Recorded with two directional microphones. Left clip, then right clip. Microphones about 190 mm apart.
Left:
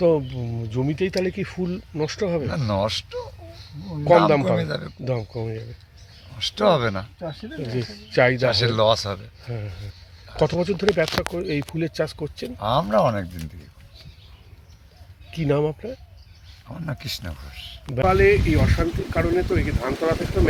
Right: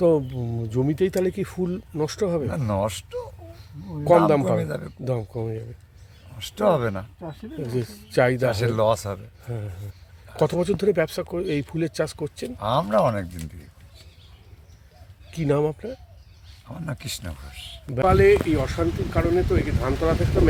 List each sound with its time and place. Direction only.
0.0 s speech: 20° right (ahead or behind); by 4.9 s centre (ahead or behind)
5.0 s speech: 15° right (ahead or behind)
7.7 s speech: 15° right (ahead or behind)
15.3 s speech: 10° right (ahead or behind)